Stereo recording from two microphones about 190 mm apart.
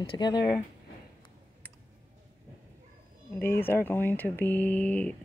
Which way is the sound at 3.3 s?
10° left (ahead or behind).